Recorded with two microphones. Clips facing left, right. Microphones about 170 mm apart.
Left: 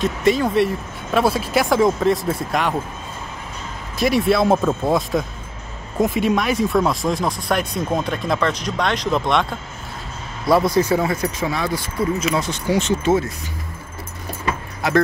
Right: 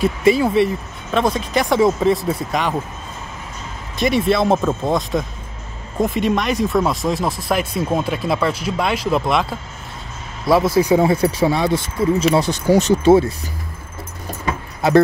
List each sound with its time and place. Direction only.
0.0 s speech: 5° right (ahead or behind)
4.0 s speech: centre (ahead or behind)
10.8 s speech: 15° right (ahead or behind)
11.1 s speech: 30° right (ahead or behind)